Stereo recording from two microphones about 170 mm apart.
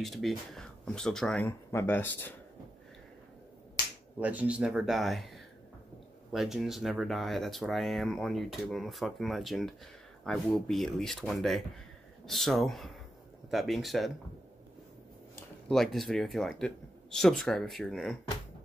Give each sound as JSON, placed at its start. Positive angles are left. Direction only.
{"t": 0.0, "sound": "speech", "side_deg": 0}
{"t": 4.2, "sound": "speech", "side_deg": -10}
{"t": 15.7, "sound": "speech", "side_deg": 0}